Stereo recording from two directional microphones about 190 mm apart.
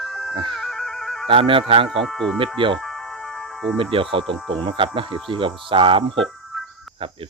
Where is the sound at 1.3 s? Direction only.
30° right (ahead or behind).